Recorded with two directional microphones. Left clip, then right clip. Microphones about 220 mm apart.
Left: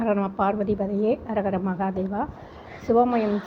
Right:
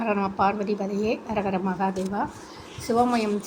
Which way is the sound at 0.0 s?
15° left (ahead or behind).